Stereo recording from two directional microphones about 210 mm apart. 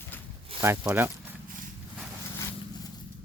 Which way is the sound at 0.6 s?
10° right (ahead or behind).